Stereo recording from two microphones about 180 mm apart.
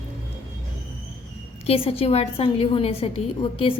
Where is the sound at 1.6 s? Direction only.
30° left (ahead or behind).